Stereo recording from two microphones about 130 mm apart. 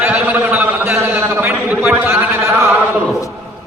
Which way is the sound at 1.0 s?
5° right (ahead or behind).